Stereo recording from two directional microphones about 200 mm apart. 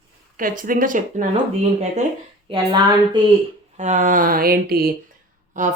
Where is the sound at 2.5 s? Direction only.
25° right (ahead or behind).